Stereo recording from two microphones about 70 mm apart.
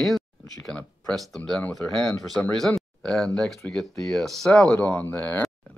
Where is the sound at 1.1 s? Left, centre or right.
Centre.